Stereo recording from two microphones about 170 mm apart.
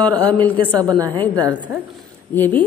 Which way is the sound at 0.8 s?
20° right (ahead or behind).